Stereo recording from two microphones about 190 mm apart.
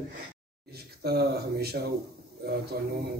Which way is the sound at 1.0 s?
55° right (ahead or behind).